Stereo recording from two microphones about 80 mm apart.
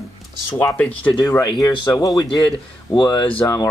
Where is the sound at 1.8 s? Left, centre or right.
Left.